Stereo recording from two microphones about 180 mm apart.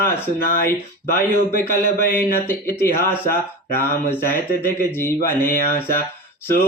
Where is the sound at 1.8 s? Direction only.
55° left (ahead or behind).